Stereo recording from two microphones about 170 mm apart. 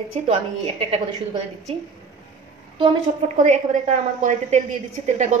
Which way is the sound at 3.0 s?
45° right (ahead or behind).